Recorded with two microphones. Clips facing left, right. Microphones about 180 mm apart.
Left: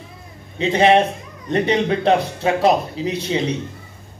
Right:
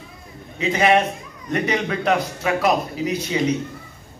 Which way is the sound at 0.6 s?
30° left (ahead or behind).